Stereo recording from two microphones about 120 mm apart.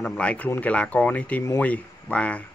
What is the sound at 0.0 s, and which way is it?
Speech, 10° left (ahead or behind).